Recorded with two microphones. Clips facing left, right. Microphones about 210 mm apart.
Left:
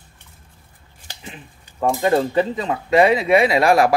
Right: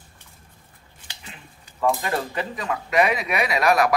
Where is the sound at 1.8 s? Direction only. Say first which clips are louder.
Left 6 dB; 25° left (ahead or behind).